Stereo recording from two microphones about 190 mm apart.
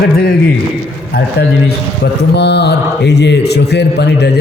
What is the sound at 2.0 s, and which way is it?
A man's voice, 65° left (ahead or behind).